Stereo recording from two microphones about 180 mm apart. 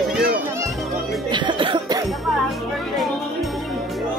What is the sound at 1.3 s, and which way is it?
Music, 25° right (ahead or behind).